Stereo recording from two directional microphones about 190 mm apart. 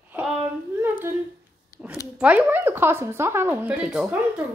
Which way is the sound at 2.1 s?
5° right (ahead or behind).